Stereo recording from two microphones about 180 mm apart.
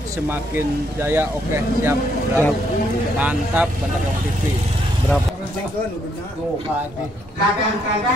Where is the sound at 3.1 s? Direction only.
10° right (ahead or behind).